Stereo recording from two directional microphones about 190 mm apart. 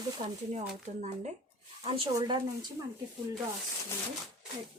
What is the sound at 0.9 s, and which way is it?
Speech, 35° right (ahead or behind).